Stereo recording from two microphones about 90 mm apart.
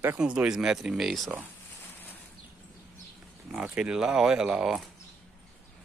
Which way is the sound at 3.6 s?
10° right (ahead or behind).